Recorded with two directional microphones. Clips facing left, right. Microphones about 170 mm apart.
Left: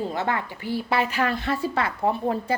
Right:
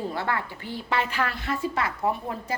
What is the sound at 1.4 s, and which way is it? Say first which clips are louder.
A woman's voice: left 3 dB; 35° left (ahead or behind).